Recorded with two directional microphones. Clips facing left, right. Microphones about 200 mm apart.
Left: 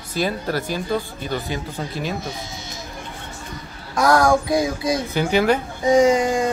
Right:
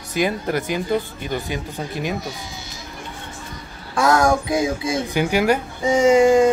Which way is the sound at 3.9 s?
25° right (ahead or behind).